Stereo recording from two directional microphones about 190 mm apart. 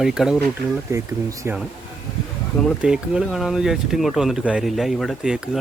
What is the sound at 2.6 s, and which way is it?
Speech, 5° right (ahead or behind).